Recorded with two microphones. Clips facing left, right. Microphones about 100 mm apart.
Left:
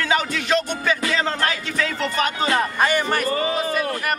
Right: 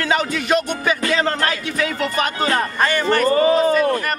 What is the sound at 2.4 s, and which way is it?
Speech, 10° left (ahead or behind).